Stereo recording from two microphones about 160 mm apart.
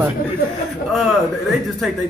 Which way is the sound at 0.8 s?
Centre (ahead or behind).